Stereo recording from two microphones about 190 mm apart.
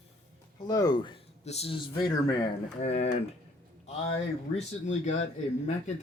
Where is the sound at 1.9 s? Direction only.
20° left (ahead or behind).